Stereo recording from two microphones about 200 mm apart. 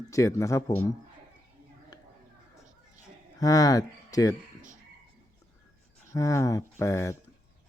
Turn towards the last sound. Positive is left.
turn(degrees=15)  # may be behind; listen again after turning